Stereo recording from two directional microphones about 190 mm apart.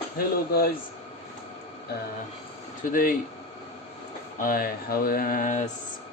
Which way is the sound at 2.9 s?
50° left (ahead or behind).